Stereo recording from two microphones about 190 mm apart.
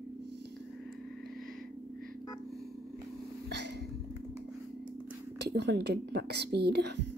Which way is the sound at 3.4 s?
65° right (ahead or behind).